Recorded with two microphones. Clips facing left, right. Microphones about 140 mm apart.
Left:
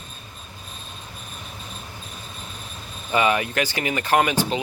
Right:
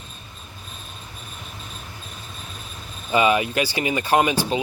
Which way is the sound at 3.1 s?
20° right (ahead or behind).